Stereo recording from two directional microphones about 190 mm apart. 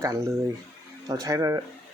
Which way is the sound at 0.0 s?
15° right (ahead or behind).